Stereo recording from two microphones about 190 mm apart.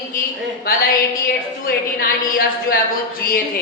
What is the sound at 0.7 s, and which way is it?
A woman's voice, 50° left (ahead or behind).